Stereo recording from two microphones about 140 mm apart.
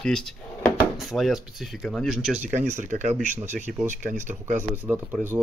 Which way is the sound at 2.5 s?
65° right (ahead or behind).